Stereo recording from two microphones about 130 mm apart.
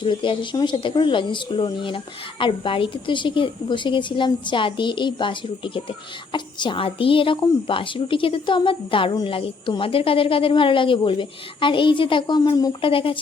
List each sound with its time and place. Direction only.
0.0 s a woman's voice: 40° left (ahead or behind)
12.5 s speech: 30° left (ahead or behind)
12.8 s speech: 45° left (ahead or behind)